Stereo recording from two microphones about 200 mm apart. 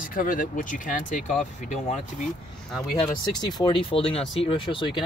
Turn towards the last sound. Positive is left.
turn(degrees=25)  # may be behind; listen again after turning